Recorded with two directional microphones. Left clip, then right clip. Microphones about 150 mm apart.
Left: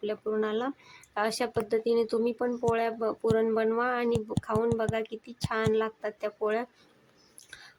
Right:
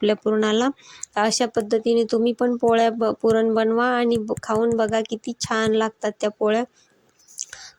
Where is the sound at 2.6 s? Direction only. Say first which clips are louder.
Right 10 dB; 45° right (ahead or behind).